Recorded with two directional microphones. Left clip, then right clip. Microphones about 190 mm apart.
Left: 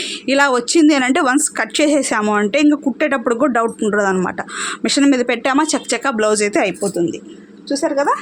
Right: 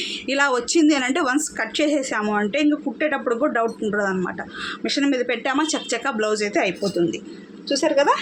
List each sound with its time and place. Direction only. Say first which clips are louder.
0.0 s a woman's voice: left 6 dB; 60° left (ahead or behind)
7.7 s a woman's voice: left 1 dB; 25° left (ahead or behind)